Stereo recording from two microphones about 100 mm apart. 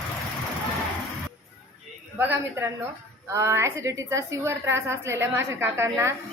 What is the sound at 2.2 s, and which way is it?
Speech, 20° right (ahead or behind).